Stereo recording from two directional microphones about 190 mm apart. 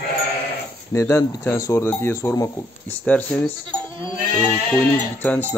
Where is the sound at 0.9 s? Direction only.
15° left (ahead or behind).